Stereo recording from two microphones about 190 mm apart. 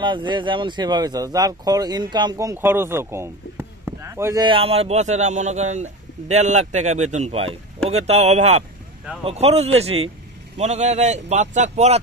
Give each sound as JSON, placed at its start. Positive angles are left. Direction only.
{"t": 0.0, "sound": "a man's voice", "side_deg": -25}